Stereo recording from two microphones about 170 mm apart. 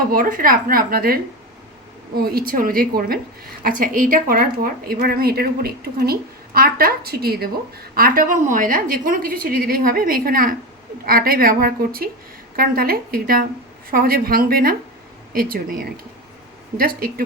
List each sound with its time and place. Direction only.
0.1 s a woman's voice: 55° right (ahead or behind)